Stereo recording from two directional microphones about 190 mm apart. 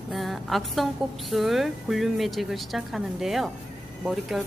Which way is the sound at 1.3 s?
Centre (ahead or behind).